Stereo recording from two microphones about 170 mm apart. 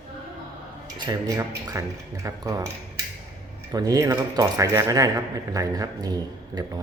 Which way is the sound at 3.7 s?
20° right (ahead or behind).